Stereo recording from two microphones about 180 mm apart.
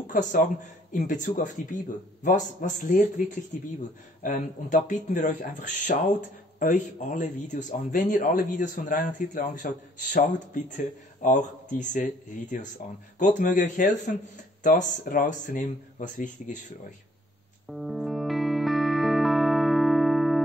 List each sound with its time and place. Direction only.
0.0 s a man's voice: 45° left (ahead or behind)
17.6 s music: centre (ahead or behind)